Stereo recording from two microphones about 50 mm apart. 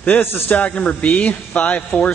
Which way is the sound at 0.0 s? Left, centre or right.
Left.